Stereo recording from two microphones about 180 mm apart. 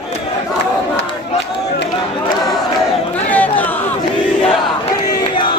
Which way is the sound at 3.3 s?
10° left (ahead or behind).